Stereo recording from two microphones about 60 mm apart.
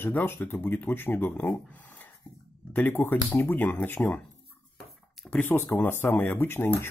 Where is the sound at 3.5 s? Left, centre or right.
Left.